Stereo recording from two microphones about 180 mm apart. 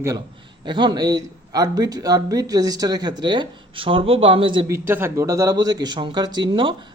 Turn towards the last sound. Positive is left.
turn(degrees=-25)  # may be behind; listen again after turning